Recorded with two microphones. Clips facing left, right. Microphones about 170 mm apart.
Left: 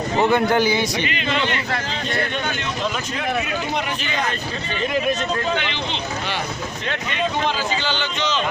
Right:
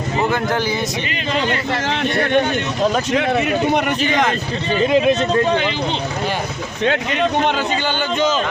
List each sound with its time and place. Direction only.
0.2 s speech: centre (ahead or behind)
1.0 s speech: 40° right (ahead or behind)
1.9 s speech: 75° right (ahead or behind)
3.7 s speech: 60° right (ahead or behind)
4.7 s speech: 30° right (ahead or behind)
6.8 s a man's voice: 60° right (ahead or behind)